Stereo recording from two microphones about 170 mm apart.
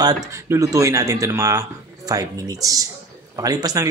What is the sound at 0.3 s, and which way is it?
Speech, 15° right (ahead or behind).